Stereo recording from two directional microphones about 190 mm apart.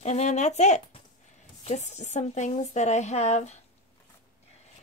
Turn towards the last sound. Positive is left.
turn(degrees=35)  # may be behind; listen again after turning